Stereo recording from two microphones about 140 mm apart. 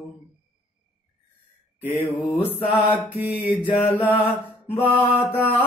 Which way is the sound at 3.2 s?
10° right (ahead or behind).